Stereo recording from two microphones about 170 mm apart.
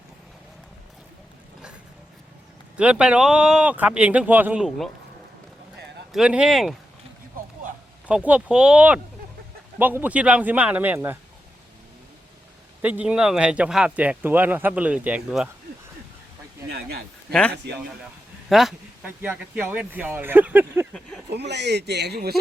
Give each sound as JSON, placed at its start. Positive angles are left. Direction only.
{"t": 2.7, "sound": "speech", "side_deg": -5}
{"t": 6.1, "sound": "speech", "side_deg": -5}
{"t": 7.3, "sound": "a sound", "side_deg": -55}
{"t": 8.0, "sound": "speech", "side_deg": -10}
{"t": 12.8, "sound": "speech", "side_deg": -10}
{"t": 16.6, "sound": "speech", "side_deg": -70}
{"t": 18.4, "sound": "speech", "side_deg": 0}
{"t": 21.3, "sound": "speech", "side_deg": -90}